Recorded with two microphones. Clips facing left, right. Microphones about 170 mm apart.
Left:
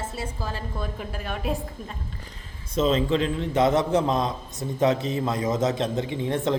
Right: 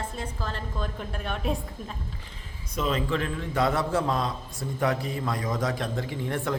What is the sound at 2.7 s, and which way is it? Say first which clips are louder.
A man's voice: left 6 dB; 25° left (ahead or behind).